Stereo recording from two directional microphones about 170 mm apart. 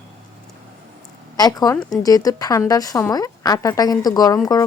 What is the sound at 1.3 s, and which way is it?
A woman's voice, 20° left (ahead or behind).